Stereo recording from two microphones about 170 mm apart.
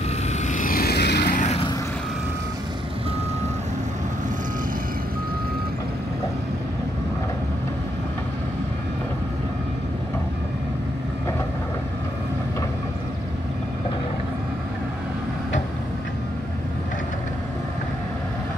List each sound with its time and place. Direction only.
0.3 s vehicle: 50° left (ahead or behind); by 1.3 s 75° left (ahead or behind)
1.3 s vehicle: 45° left (ahead or behind)